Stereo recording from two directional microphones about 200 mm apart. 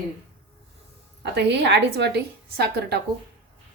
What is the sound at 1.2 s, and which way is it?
A woman's voice, 60° right (ahead or behind).